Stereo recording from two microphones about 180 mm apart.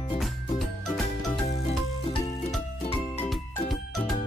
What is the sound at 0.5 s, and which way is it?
Music, centre (ahead or behind).